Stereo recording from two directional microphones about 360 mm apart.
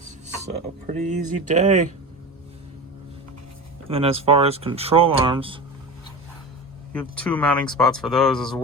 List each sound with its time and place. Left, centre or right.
0.3 s speech: centre
3.8 s speech: centre
6.9 s speech: centre